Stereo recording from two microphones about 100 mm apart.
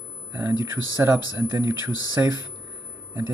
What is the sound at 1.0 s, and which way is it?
Speech, 20° right (ahead or behind).